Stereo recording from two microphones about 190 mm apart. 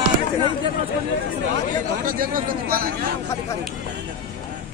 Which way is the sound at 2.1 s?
50° right (ahead or behind).